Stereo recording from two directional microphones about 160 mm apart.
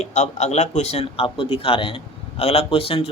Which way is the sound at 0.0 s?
45° left (ahead or behind).